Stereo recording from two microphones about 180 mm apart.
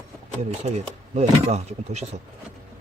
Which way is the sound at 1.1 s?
35° right (ahead or behind).